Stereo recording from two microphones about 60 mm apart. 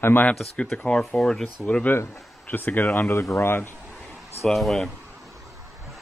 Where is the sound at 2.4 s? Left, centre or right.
Left.